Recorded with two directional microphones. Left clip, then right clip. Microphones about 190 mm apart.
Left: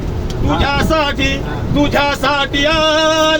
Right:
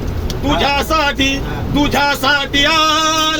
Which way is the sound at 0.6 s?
45° right (ahead or behind).